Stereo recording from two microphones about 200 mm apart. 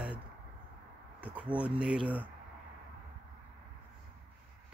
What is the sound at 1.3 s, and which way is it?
Speech, 5° right (ahead or behind).